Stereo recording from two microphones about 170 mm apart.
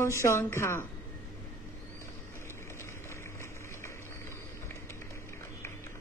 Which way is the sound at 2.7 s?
15° left (ahead or behind).